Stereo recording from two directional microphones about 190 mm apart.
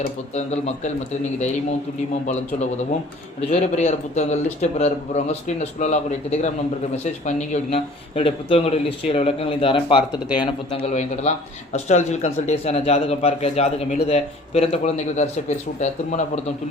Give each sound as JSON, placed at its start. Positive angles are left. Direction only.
{"t": 0.0, "sound": "speech", "side_deg": 35}
{"t": 2.2, "sound": "speech", "side_deg": 40}